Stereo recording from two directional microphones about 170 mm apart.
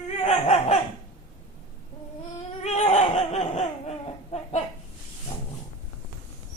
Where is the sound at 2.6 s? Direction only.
40° left (ahead or behind).